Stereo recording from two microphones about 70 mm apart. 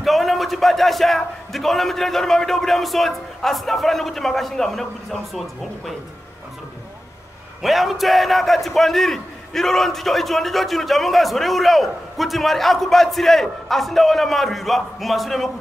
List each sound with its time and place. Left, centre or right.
0.0 s a man's voice: centre
7.6 s a man's voice: centre